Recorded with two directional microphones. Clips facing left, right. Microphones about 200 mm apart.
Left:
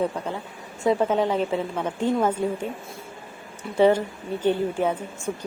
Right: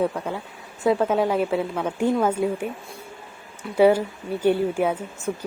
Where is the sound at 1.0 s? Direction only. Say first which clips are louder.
Right 1 dB; 10° right (ahead or behind).